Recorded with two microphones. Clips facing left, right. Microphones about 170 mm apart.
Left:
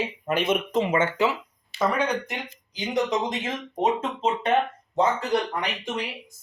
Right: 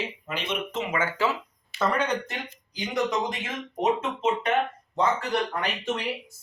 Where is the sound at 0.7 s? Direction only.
30° left (ahead or behind).